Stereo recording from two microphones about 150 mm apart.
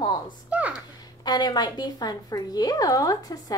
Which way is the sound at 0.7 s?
30° left (ahead or behind).